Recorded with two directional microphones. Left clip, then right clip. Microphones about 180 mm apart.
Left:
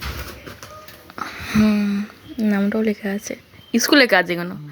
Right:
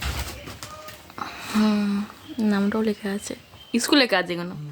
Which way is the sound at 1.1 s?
10° left (ahead or behind).